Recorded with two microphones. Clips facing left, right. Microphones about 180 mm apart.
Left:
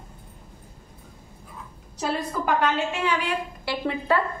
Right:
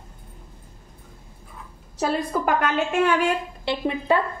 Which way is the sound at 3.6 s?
20° right (ahead or behind).